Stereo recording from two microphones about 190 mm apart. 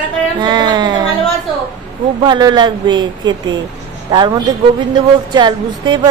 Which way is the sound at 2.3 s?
20° right (ahead or behind).